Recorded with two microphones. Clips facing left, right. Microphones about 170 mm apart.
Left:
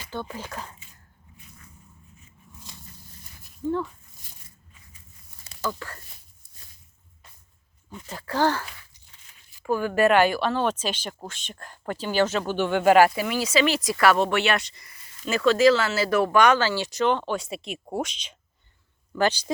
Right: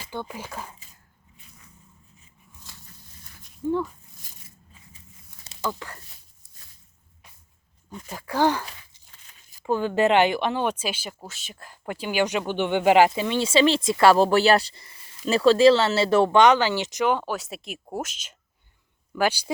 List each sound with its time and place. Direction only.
0.0 s speech: 10° right (ahead or behind)
2.7 s walk: 20° left (ahead or behind)
3.7 s speech: 15° right (ahead or behind)
5.5 s a sound: 15° right (ahead or behind)
8.0 s speech: 10° right (ahead or behind)
9.6 s speech: 20° right (ahead or behind)